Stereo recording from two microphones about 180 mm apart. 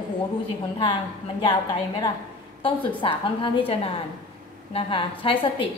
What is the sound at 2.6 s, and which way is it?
A woman's voice, 30° left (ahead or behind).